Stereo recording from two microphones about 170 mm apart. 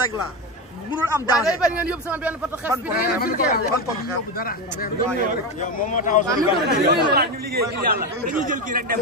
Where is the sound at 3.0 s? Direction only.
60° left (ahead or behind).